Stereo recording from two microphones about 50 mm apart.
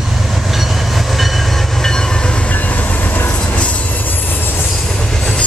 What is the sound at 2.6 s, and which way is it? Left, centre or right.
Train, left.